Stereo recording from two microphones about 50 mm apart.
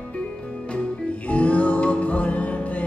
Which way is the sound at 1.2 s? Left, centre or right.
Left.